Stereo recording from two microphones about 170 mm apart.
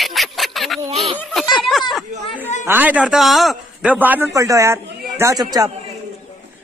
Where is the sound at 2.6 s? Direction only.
10° right (ahead or behind).